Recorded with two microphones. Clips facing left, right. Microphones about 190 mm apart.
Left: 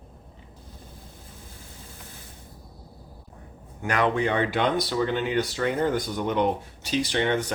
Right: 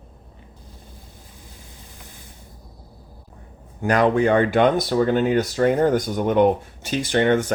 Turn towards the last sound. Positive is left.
turn(degrees=-50)  # may be behind; listen again after turning